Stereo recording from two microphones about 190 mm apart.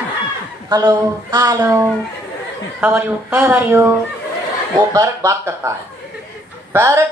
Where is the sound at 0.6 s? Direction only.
20° right (ahead or behind).